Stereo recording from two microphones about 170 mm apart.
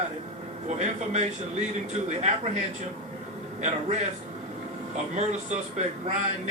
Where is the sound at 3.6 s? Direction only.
45° right (ahead or behind).